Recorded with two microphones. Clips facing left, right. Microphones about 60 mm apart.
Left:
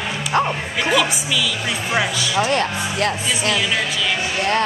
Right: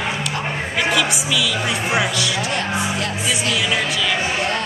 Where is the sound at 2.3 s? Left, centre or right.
Left.